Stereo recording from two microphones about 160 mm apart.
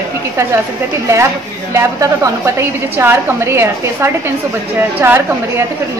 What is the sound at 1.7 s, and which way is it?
A woman's voice, 20° right (ahead or behind).